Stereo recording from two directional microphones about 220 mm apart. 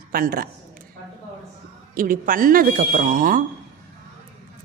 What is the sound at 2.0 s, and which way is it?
A woman's voice, 40° right (ahead or behind).